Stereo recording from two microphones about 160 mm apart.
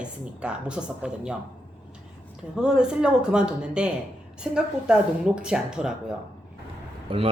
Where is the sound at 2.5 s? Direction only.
5° right (ahead or behind).